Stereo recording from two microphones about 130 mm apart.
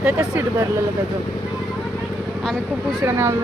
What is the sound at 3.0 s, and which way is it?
Speech, 20° right (ahead or behind).